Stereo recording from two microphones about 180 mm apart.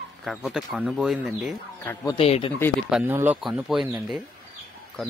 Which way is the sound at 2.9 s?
10° right (ahead or behind).